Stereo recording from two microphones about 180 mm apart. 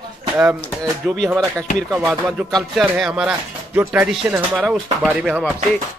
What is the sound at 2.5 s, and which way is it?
Speech, centre (ahead or behind).